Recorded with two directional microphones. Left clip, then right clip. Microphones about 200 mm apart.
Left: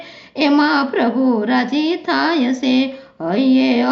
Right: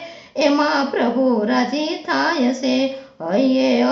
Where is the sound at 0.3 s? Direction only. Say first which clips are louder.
Left 2 dB; 35° left (ahead or behind).